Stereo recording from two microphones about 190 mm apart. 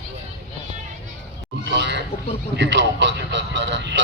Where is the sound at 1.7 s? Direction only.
65° right (ahead or behind).